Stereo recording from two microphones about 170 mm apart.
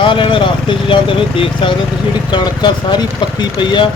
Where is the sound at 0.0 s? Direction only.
30° left (ahead or behind).